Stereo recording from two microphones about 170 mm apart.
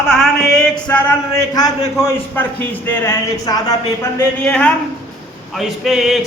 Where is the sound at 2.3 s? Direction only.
10° left (ahead or behind).